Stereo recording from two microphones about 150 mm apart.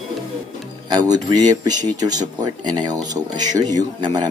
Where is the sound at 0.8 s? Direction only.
25° right (ahead or behind).